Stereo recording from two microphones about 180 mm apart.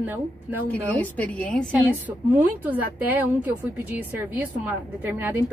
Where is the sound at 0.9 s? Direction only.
10° left (ahead or behind).